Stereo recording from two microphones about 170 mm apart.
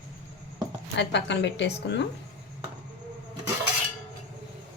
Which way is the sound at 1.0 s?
90° left.